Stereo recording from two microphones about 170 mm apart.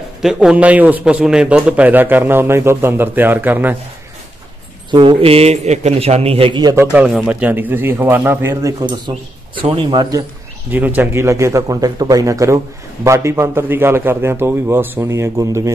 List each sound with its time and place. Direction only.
0.2 s a man's voice: 5° right (ahead or behind)
4.9 s a man's voice: 35° right (ahead or behind); by 8.7 s 15° right (ahead or behind)
8.8 s speech: 25° right (ahead or behind)
10.7 s a man's voice: 10° right (ahead or behind)